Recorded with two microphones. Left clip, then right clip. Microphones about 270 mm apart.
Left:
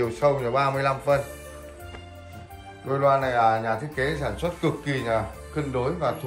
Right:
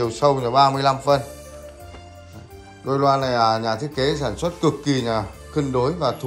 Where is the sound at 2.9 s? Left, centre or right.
Centre.